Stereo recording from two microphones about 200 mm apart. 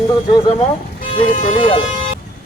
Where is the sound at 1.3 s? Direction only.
40° left (ahead or behind).